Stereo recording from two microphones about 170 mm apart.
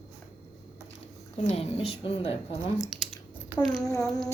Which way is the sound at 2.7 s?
Centre (ahead or behind).